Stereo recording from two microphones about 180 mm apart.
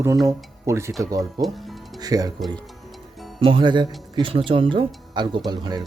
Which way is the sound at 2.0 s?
20° right (ahead or behind).